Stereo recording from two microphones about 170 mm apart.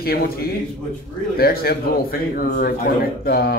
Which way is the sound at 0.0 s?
65° left (ahead or behind).